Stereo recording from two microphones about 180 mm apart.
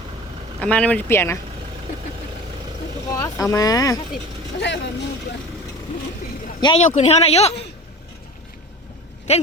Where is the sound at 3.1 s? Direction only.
15° left (ahead or behind).